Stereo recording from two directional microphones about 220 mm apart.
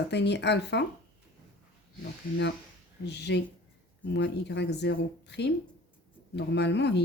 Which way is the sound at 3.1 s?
50° left (ahead or behind).